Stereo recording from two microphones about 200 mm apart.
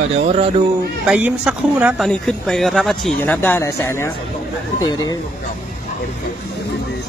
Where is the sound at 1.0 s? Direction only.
5° right (ahead or behind); by 5.2 s 20° left (ahead or behind).